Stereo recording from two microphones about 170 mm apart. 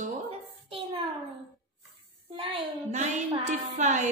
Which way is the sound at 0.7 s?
35° right (ahead or behind).